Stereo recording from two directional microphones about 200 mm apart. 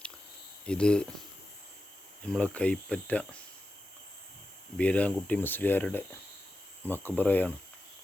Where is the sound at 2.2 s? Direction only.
5° left (ahead or behind).